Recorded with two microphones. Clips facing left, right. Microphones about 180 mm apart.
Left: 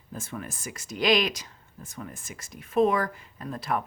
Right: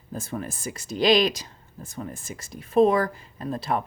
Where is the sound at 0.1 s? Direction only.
35° right (ahead or behind).